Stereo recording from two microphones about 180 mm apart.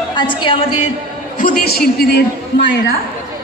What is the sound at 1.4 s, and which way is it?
A woman's voice, 50° left (ahead or behind).